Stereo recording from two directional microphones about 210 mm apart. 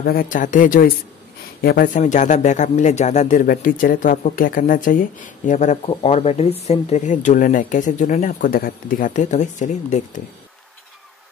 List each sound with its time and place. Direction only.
0.0 s speech: 45° left (ahead or behind)